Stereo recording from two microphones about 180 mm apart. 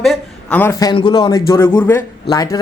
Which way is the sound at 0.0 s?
Centre (ahead or behind).